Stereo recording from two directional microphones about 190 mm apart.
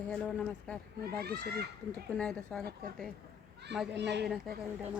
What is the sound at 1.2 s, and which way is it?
Speech, 55° right (ahead or behind).